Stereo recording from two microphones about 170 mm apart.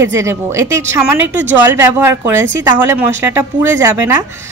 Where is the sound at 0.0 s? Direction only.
15° right (ahead or behind).